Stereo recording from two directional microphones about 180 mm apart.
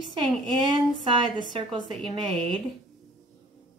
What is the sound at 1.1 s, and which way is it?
Speech, 25° right (ahead or behind).